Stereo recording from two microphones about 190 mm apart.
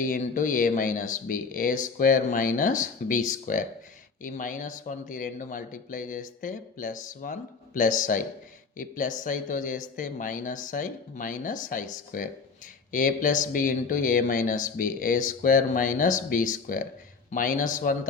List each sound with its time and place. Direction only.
0.0 s speech: 45° left (ahead or behind)